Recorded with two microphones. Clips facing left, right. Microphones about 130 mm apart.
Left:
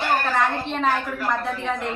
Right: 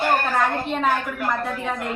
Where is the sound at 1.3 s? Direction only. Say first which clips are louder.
Left 1 dB; 5° right (ahead or behind).